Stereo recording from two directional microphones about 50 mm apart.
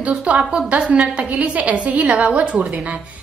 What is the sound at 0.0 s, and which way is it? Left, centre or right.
A woman's voice, right.